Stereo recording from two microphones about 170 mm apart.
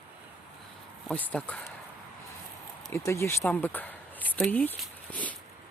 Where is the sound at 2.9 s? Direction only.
15° left (ahead or behind).